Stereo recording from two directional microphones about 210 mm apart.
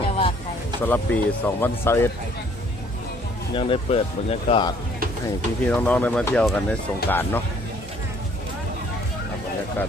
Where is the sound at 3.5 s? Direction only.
25° left (ahead or behind).